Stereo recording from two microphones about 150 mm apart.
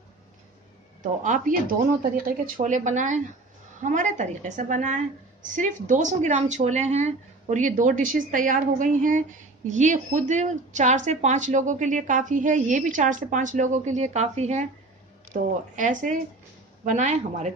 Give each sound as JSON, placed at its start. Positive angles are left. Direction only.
{"t": 1.2, "sound": "a woman's voice", "side_deg": -60}